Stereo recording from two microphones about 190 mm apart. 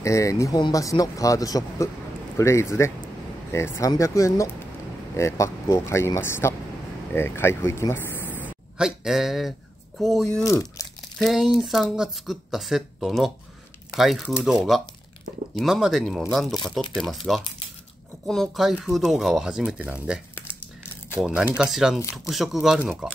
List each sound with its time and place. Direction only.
0.0 s speech: 15° left (ahead or behind)
8.4 s speech: 5° right (ahead or behind)
10.4 s speech: 15° left (ahead or behind)
11.1 s speech: centre (ahead or behind)